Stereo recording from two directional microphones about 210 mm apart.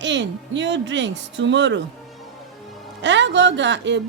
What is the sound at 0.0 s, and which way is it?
Music, 60° right (ahead or behind).